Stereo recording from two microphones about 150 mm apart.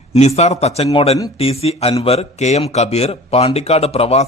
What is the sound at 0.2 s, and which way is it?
Speech, 45° left (ahead or behind).